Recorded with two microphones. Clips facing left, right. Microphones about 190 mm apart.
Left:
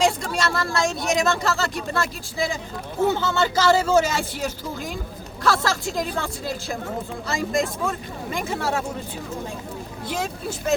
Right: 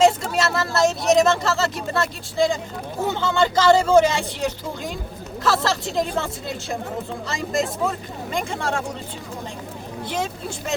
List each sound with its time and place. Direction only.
0.0 s speech: 5° right (ahead or behind)